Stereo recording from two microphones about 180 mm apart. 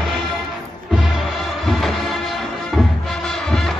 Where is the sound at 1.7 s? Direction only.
Centre (ahead or behind).